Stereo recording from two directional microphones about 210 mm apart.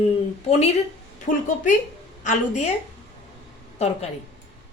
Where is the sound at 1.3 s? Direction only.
40° left (ahead or behind).